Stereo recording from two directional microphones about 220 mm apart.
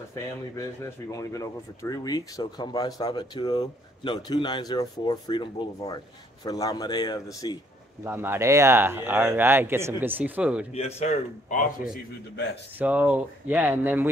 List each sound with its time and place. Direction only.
1.1 s speech: 15° left (ahead or behind)
8.0 s speech: 10° right (ahead or behind)
10.7 s a man's voice: 30° left (ahead or behind)
12.7 s speech: 5° right (ahead or behind)